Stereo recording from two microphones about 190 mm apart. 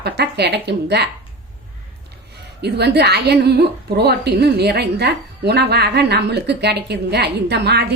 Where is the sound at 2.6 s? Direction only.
60° right (ahead or behind).